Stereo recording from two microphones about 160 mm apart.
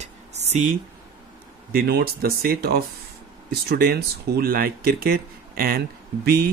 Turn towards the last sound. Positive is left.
turn(degrees=-75)  # may be behind; listen again after turning